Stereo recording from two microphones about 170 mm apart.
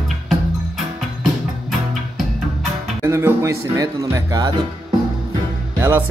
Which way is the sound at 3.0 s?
15° right (ahead or behind).